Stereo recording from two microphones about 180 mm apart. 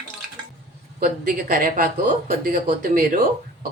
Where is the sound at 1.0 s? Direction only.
50° right (ahead or behind).